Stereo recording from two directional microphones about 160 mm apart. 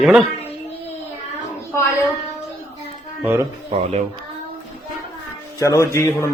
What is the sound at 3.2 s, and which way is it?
Speech, 15° right (ahead or behind).